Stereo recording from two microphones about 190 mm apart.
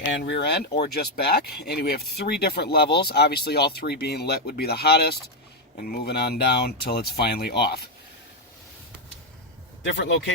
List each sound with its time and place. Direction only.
0.0 s speech: 60° left (ahead or behind)
9.8 s a man's voice: 75° left (ahead or behind)